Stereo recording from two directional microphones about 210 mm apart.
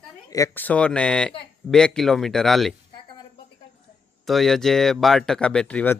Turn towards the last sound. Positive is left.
turn(degrees=10)  # may be behind; listen again after turning